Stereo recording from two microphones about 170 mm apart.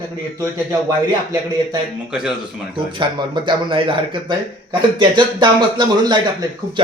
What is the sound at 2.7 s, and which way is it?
Speech, 30° right (ahead or behind).